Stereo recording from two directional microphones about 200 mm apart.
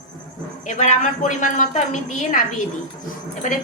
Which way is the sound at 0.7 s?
35° left (ahead or behind).